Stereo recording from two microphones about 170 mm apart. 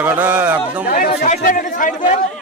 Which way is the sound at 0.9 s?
60° left (ahead or behind).